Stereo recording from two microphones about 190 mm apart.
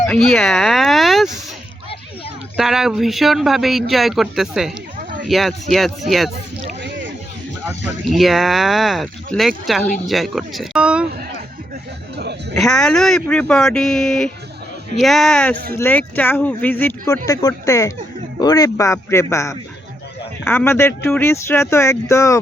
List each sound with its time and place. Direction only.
0.1 s speech: centre (ahead or behind)
2.6 s speech: centre (ahead or behind)
6.8 s a sound: 75° right (ahead or behind)
8.1 s speech: centre (ahead or behind)
12.1 s a man's voice: 60° right (ahead or behind)
12.5 s speech: 5° left (ahead or behind)